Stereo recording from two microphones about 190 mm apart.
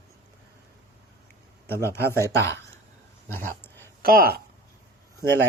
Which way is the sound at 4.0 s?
50° right (ahead or behind).